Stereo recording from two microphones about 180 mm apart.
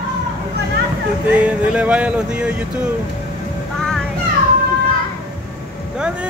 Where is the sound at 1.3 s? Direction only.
10° right (ahead or behind).